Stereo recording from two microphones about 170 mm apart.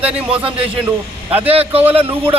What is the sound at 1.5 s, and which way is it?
Speech, 35° right (ahead or behind).